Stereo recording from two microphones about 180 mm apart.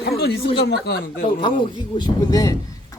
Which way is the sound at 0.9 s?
60° left (ahead or behind).